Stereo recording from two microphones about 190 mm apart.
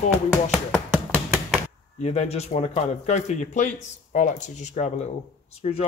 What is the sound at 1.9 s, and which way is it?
Speech, 35° left (ahead or behind).